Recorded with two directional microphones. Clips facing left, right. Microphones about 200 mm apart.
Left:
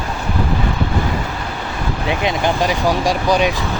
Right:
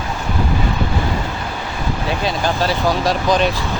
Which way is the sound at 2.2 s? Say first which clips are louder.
Left 2 dB; 15° left (ahead or behind).